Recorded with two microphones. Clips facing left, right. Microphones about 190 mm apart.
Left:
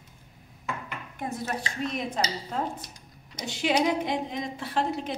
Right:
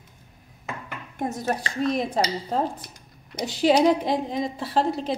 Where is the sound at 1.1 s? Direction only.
40° right (ahead or behind).